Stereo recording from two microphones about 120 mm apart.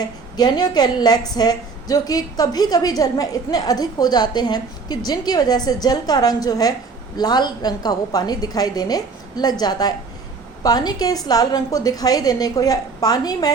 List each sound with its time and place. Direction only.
0.0 s a woman's voice: 35° left (ahead or behind)